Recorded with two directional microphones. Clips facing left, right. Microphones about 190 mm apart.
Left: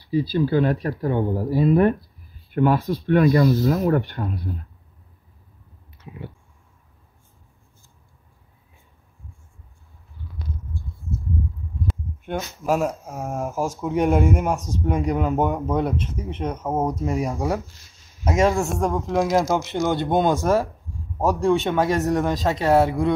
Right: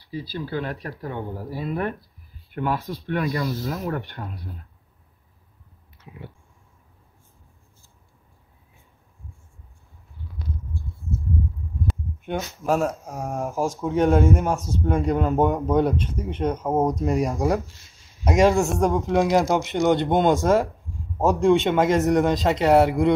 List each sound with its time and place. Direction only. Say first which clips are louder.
0.1 s speech: left 9 dB; 25° left (ahead or behind)
2.5 s speech: left 7 dB; 45° left (ahead or behind)
11.9 s a man's voice: even; centre (ahead or behind)
19.7 s speech: right 2 dB; 20° right (ahead or behind)
21.5 s a man's voice: right 2 dB; centre (ahead or behind)